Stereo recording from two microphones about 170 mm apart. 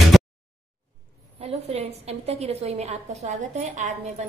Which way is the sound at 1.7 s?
40° right (ahead or behind).